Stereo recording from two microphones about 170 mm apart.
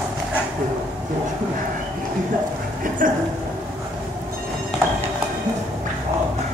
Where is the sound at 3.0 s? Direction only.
50° right (ahead or behind).